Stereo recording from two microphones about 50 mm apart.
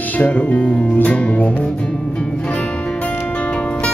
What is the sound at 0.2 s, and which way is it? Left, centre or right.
Music, left.